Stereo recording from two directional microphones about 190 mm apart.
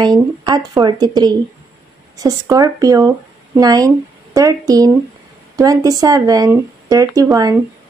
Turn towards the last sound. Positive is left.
turn(degrees=-20)  # may be behind; listen again after turning